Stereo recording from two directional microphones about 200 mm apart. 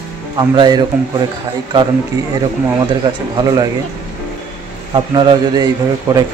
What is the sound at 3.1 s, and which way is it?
Speech, 25° right (ahead or behind).